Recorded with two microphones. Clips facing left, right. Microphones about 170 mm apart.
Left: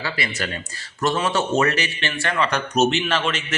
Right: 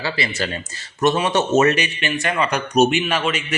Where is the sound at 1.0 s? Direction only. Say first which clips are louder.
Right 3 dB; 20° right (ahead or behind).